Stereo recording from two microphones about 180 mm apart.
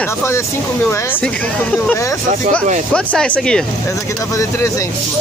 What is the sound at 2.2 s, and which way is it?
Speech, 45° right (ahead or behind).